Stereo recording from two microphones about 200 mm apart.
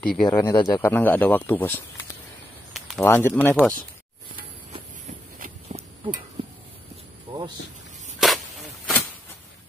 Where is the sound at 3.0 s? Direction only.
15° left (ahead or behind).